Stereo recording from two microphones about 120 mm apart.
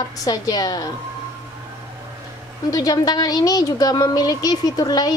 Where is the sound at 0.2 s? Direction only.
30° left (ahead or behind).